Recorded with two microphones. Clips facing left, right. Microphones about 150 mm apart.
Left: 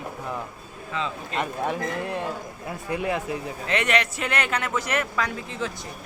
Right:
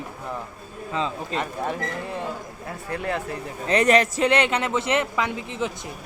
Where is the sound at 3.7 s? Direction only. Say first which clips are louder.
Right 6 dB; 40° right (ahead or behind).